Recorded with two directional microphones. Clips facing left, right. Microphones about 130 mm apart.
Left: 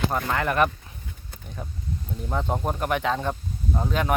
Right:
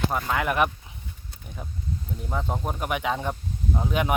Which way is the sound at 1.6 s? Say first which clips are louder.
Even; centre (ahead or behind).